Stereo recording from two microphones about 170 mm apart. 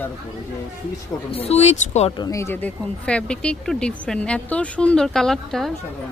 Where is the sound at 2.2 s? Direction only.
20° left (ahead or behind); by 5.7 s centre (ahead or behind).